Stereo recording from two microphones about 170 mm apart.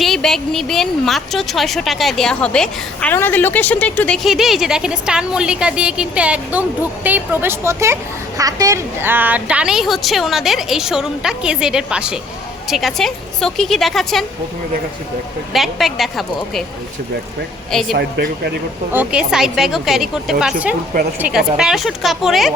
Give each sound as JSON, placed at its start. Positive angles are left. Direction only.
{"t": 0.0, "sound": "speech", "side_deg": 0}
{"t": 15.5, "sound": "speech", "side_deg": 0}
{"t": 17.7, "sound": "a woman's voice", "side_deg": 0}
{"t": 17.9, "sound": "speech", "side_deg": -75}
{"t": 18.9, "sound": "a woman's voice", "side_deg": -5}